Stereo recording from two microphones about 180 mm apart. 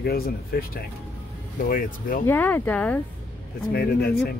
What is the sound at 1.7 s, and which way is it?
Speech, 50° left (ahead or behind).